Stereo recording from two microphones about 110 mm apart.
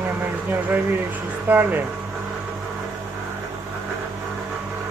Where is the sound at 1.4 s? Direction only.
15° right (ahead or behind).